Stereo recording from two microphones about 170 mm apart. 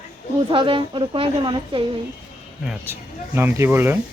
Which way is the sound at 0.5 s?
30° right (ahead or behind).